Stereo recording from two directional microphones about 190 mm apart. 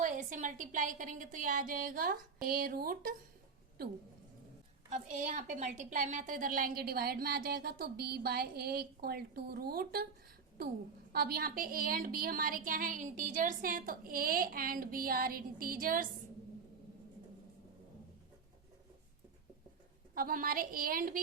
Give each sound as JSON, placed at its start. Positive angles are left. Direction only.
{"t": 0.0, "sound": "a woman's voice", "side_deg": -45}
{"t": 4.9, "sound": "a woman's voice", "side_deg": -40}
{"t": 11.1, "sound": "a woman's voice", "side_deg": -50}
{"t": 20.1, "sound": "a woman's voice", "side_deg": -50}